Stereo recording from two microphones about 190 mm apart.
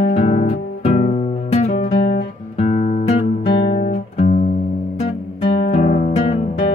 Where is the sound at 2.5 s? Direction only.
35° left (ahead or behind).